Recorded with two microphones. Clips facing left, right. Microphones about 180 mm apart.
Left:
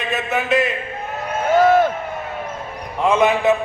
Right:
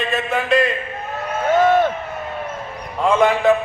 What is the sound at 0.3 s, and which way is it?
Speech, 20° left (ahead or behind).